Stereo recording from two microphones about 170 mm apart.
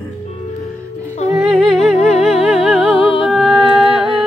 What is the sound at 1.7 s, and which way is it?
Music, centre (ahead or behind).